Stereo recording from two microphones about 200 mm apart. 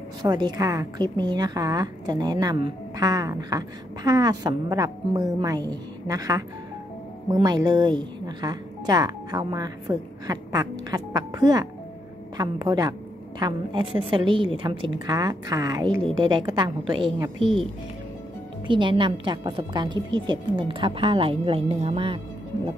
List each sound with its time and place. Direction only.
0.2 s a woman's voice: 20° right (ahead or behind)
18.7 s a woman's voice: 25° right (ahead or behind)